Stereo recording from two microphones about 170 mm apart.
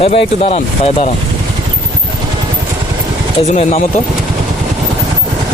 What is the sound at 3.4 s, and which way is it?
Speech, 45° left (ahead or behind).